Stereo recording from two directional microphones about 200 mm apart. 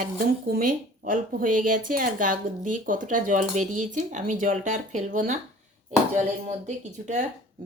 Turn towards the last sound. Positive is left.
turn(degrees=-35)  # may be behind; listen again after turning